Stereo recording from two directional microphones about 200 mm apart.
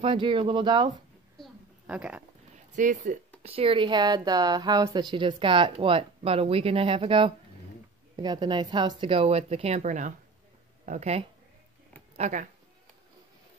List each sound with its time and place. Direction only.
0.0 s speech: 25° right (ahead or behind)
1.4 s a sound: 5° right (ahead or behind)
2.5 s speech: 40° right (ahead or behind)
3.4 s speech: 25° right (ahead or behind)